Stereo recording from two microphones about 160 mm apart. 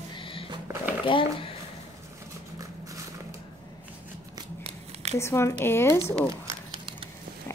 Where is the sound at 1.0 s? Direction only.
30° left (ahead or behind).